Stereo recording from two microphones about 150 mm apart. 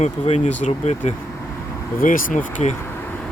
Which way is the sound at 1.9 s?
65° left (ahead or behind).